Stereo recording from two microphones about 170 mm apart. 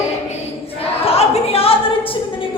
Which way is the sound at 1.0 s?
35° left (ahead or behind).